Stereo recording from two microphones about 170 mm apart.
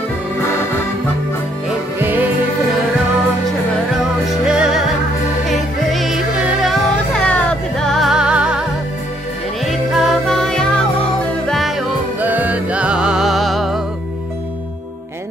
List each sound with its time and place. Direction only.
2.0 s music: 10° right (ahead or behind)
4.0 s music: 5° right (ahead or behind)
9.7 s music: centre (ahead or behind)